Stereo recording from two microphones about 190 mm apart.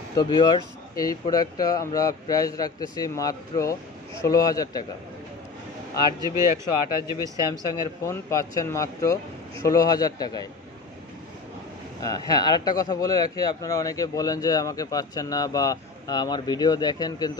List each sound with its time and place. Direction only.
0.2 s a man's voice: 20° left (ahead or behind)
6.7 s a man's voice: 20° left (ahead or behind)
12.0 s a man's voice: 20° left (ahead or behind)